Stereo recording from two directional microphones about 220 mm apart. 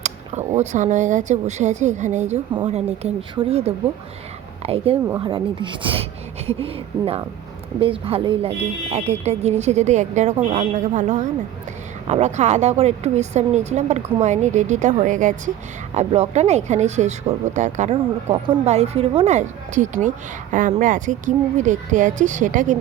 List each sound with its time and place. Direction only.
0.0 s speech: 30° right (ahead or behind)
17.9 s speech: 20° right (ahead or behind)